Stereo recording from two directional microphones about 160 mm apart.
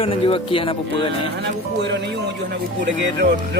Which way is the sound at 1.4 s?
90° right.